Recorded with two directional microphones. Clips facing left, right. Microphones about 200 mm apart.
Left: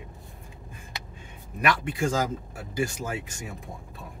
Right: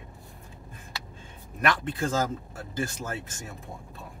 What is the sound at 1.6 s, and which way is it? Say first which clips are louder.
Speech: left 1 dB; 10° left (ahead or behind).